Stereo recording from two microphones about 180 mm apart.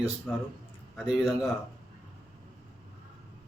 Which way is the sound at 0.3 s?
5° left (ahead or behind).